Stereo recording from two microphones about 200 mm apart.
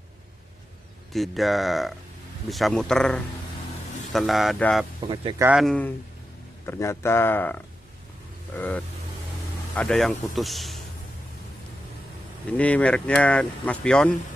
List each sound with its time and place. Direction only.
1.1 s speech: centre (ahead or behind)
5.0 s speech: 25° right (ahead or behind)
5.4 s speech: 5° right (ahead or behind)
12.5 s speech: 5° left (ahead or behind)